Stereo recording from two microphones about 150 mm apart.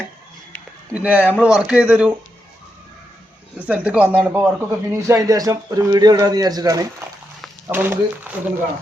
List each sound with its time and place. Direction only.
0.9 s speech: 10° right (ahead or behind)
3.7 s a man's voice: 10° right (ahead or behind); by 6.8 s 25° right (ahead or behind)
7.7 s speech: 15° right (ahead or behind)